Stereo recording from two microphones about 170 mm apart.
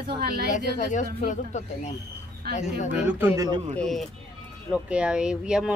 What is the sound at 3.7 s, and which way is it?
Speech, centre (ahead or behind).